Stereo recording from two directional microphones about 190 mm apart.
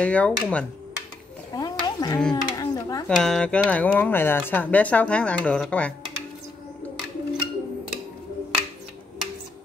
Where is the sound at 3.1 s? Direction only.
5° left (ahead or behind).